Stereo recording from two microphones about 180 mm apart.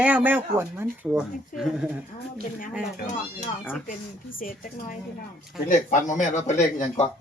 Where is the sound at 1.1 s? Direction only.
Centre (ahead or behind).